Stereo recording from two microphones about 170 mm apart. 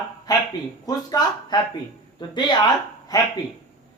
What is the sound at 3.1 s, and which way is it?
Speech, 20° left (ahead or behind).